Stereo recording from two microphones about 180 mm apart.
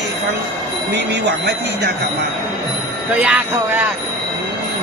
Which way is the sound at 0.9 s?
70° right (ahead or behind).